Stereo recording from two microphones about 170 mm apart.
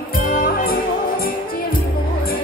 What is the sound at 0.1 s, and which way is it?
Music, 55° left (ahead or behind).